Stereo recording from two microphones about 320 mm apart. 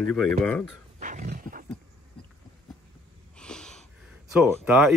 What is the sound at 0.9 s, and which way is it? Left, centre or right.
Dog, right.